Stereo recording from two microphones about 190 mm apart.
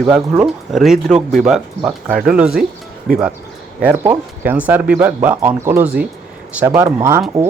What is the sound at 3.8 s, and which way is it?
Speech, 10° right (ahead or behind).